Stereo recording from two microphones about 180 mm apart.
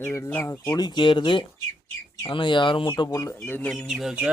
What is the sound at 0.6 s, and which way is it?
Speech, 20° left (ahead or behind).